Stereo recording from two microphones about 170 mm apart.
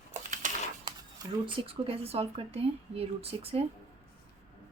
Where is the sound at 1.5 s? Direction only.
30° right (ahead or behind).